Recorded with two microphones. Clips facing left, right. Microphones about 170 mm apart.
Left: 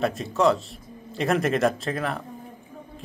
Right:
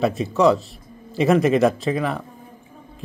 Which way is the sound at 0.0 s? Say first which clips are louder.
Right 4 dB; centre (ahead or behind).